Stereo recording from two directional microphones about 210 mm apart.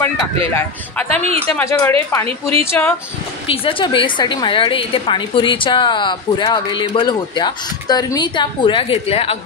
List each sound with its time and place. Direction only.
0.6 s speech: 5° left (ahead or behind)
3.4 s a woman's voice: 25° left (ahead or behind)